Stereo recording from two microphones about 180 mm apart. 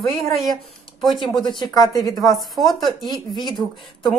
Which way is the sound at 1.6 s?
20° left (ahead or behind).